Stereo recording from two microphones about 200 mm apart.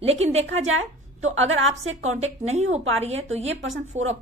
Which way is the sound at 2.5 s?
35° right (ahead or behind).